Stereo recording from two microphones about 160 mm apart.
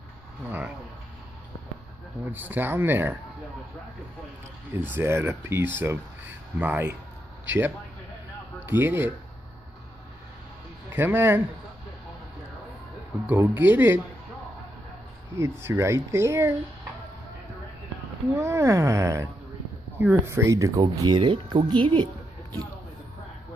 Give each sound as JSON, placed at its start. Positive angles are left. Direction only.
{"t": 2.2, "sound": "speech", "side_deg": -10}
{"t": 4.7, "sound": "a man's voice", "side_deg": -15}
{"t": 10.9, "sound": "speech", "side_deg": -15}
{"t": 13.3, "sound": "speech", "side_deg": -10}
{"t": 15.3, "sound": "speech", "side_deg": -15}
{"t": 18.4, "sound": "speech", "side_deg": -15}